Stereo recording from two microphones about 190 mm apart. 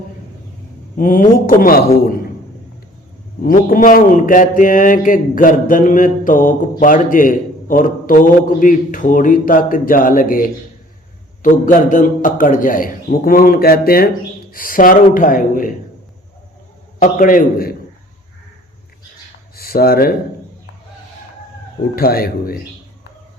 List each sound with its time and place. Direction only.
0.9 s speech: 45° left (ahead or behind)
3.4 s speech: 45° left (ahead or behind)
17.0 s speech: 45° left (ahead or behind)
19.5 s speech: 50° left (ahead or behind)
21.9 s speech: 50° left (ahead or behind)